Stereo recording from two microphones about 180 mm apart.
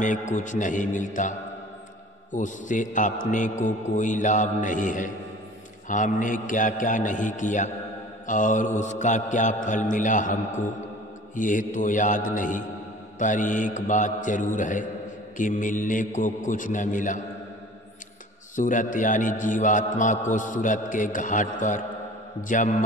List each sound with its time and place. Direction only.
0.0 s a man's voice: 45° left (ahead or behind)
2.3 s a man's voice: 45° left (ahead or behind)
18.6 s a man's voice: 45° left (ahead or behind)